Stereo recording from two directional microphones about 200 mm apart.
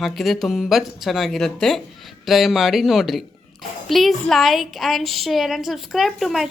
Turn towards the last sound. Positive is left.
turn(degrees=0)  # may be behind; listen again after turning